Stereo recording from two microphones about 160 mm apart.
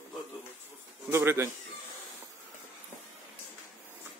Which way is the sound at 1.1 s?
15° right (ahead or behind).